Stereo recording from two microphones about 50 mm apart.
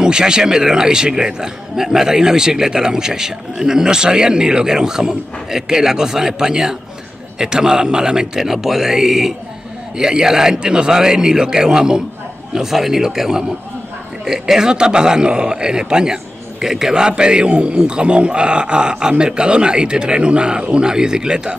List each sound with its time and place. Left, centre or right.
0.0 s a man's voice: centre